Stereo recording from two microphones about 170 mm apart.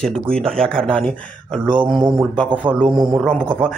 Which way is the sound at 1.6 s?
25° right (ahead or behind).